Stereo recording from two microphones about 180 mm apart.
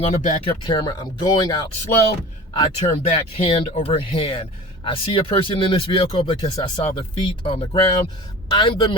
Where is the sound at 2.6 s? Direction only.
30° left (ahead or behind).